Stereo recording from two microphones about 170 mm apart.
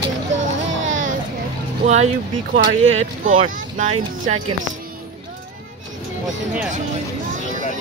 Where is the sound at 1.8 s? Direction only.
40° right (ahead or behind).